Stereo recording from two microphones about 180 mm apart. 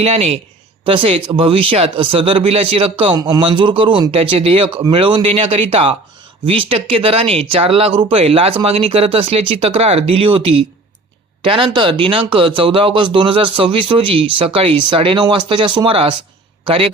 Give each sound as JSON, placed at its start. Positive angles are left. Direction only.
{"t": 0.0, "sound": "speech", "side_deg": -35}